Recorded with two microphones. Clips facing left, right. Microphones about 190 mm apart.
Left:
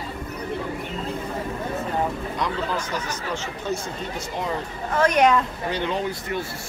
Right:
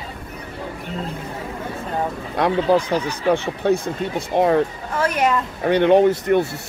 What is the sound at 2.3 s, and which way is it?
Speech, 60° right (ahead or behind).